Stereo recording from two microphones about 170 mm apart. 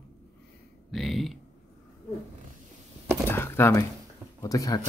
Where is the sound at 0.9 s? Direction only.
Centre (ahead or behind).